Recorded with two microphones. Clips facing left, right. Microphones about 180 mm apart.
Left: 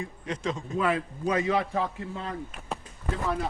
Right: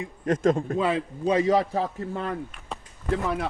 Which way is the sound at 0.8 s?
25° right (ahead or behind).